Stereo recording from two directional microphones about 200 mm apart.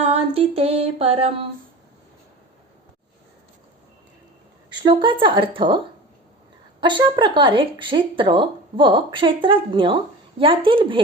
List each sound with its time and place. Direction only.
0.1 s speech: 30° right (ahead or behind)
4.8 s speech: 25° right (ahead or behind)